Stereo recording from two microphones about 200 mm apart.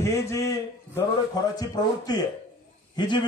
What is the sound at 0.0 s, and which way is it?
A man's voice, 15° left (ahead or behind).